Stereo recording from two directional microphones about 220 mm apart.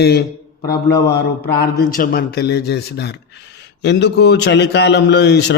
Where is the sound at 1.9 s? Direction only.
40° left (ahead or behind).